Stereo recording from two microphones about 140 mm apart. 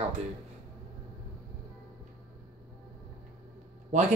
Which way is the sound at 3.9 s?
55° right (ahead or behind).